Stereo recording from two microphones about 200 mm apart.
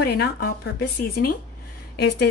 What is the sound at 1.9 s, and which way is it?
Speech, 55° left (ahead or behind).